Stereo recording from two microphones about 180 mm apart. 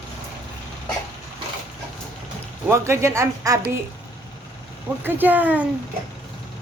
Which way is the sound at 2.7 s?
15° right (ahead or behind).